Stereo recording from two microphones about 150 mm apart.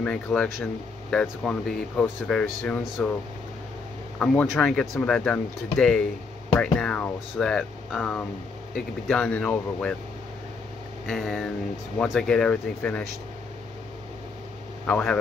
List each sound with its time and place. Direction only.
0.0 s speech: 5° left (ahead or behind)
4.2 s speech: 5° left (ahead or behind)
11.1 s speech: centre (ahead or behind)
14.9 s speech: 10° left (ahead or behind)